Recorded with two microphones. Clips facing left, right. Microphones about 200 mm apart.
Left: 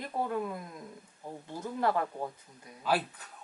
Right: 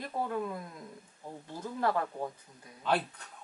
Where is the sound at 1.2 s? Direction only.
15° left (ahead or behind).